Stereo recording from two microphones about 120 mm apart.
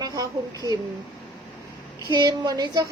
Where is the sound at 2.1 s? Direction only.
35° right (ahead or behind).